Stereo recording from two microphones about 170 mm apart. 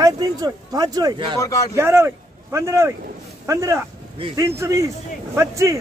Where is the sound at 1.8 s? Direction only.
15° right (ahead or behind).